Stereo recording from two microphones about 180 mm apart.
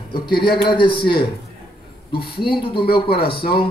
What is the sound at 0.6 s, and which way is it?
Speech, 25° left (ahead or behind).